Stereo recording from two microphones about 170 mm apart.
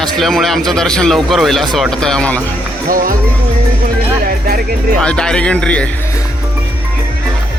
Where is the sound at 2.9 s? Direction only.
55° right (ahead or behind).